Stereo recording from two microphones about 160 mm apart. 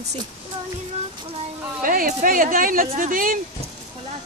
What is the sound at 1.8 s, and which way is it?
Speech, 60° right (ahead or behind).